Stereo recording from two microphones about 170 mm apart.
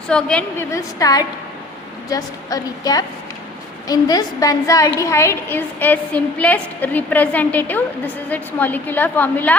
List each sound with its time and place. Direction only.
0.1 s a woman's voice: 5° left (ahead or behind)
0.7 s a woman's voice: 20° left (ahead or behind)